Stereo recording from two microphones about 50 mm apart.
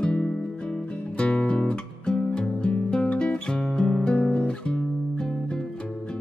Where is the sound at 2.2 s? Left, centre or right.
Centre.